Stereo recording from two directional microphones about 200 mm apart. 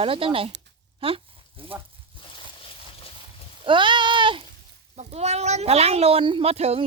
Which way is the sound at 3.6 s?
25° right (ahead or behind).